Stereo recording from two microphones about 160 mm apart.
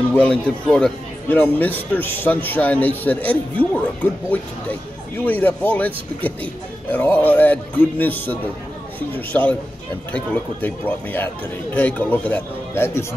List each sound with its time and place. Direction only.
0.1 s a man's voice: 5° left (ahead or behind)